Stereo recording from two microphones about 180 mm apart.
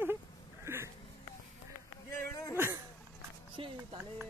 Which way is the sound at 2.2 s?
15° left (ahead or behind).